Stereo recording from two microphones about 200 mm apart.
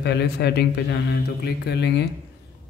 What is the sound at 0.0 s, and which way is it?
Speech, 55° left (ahead or behind).